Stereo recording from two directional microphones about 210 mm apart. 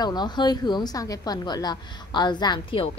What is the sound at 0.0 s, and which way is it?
A woman's voice, 20° left (ahead or behind).